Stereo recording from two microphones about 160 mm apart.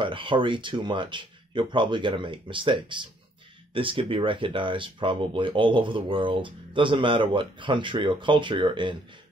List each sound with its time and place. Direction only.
0.0 s speech: 30° right (ahead or behind)